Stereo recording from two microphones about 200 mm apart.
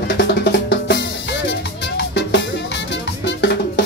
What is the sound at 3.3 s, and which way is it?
Music, 60° left (ahead or behind).